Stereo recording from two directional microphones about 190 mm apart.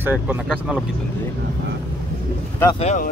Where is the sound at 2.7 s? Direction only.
35° left (ahead or behind).